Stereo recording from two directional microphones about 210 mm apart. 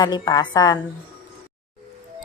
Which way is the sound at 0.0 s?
20° left (ahead or behind).